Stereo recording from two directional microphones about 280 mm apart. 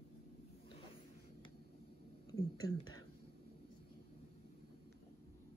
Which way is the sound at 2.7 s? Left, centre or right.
Centre.